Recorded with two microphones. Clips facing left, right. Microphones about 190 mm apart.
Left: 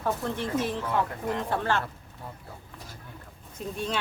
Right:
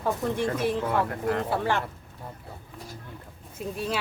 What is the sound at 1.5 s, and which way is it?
Speech, 15° right (ahead or behind).